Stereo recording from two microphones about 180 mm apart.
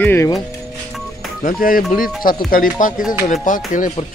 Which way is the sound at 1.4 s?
50° left (ahead or behind).